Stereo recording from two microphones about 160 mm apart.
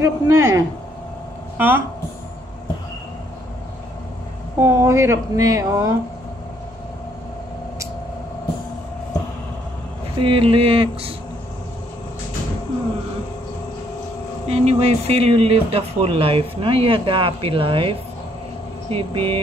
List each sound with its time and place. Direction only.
0.0 s speech: 20° right (ahead or behind)
4.6 s speech: 15° right (ahead or behind)
10.1 s speech: 35° right (ahead or behind)
14.5 s speech: 40° right (ahead or behind)